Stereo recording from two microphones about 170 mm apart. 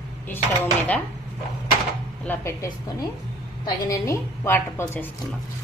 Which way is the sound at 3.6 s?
20° left (ahead or behind).